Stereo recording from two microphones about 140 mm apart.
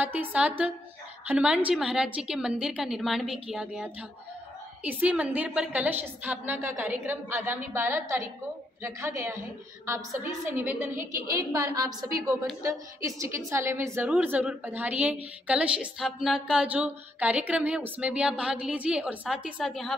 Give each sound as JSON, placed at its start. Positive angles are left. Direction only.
{"t": 0.0, "sound": "a woman's voice", "side_deg": -10}
{"t": 10.6, "sound": "a woman's voice", "side_deg": -15}